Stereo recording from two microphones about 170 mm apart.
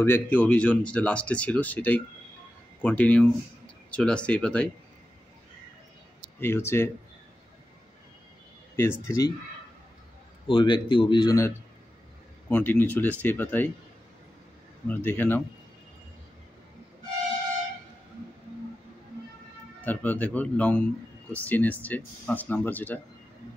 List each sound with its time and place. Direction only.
0.0 s speech: 10° left (ahead or behind)
6.4 s speech: 15° left (ahead or behind)
8.7 s speech: 15° left (ahead or behind)
10.5 s speech: 25° left (ahead or behind); by 13.7 s 10° left (ahead or behind)
14.9 s speech: 10° left (ahead or behind)
19.8 s speech: 10° left (ahead or behind)